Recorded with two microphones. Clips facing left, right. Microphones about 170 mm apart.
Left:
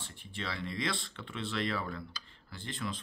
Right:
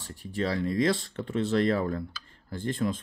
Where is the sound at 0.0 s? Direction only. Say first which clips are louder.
Right 11 dB; 40° right (ahead or behind).